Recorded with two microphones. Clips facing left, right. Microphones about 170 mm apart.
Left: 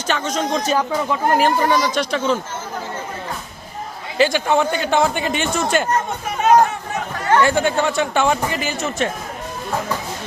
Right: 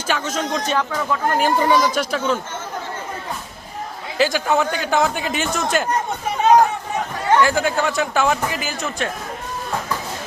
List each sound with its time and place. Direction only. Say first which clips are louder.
0.1 s speech: left 1 dB; 5° right (ahead or behind)
0.5 s speech: left 3 dB; 10° left (ahead or behind)
1.5 s speech: even; 15° right (ahead or behind)
4.2 s a man's voice: left 2 dB; centre (ahead or behind)
7.4 s a man's voice: left 2 dB; centre (ahead or behind)